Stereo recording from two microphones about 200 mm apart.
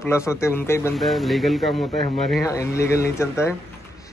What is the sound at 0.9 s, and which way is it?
Speech, centre (ahead or behind).